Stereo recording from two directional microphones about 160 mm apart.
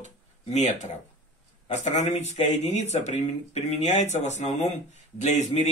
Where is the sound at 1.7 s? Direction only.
45° left (ahead or behind).